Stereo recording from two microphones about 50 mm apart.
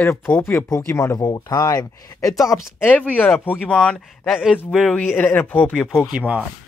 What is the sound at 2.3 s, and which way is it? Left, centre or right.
Speech, left.